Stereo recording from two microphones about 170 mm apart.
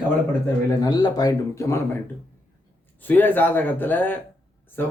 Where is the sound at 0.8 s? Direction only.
25° left (ahead or behind).